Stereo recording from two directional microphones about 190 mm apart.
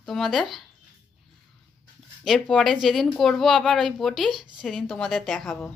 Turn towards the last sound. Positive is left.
turn(degrees=5)  # may be behind; listen again after turning